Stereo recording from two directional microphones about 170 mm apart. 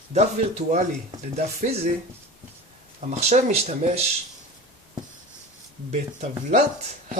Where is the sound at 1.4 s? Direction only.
40° right (ahead or behind).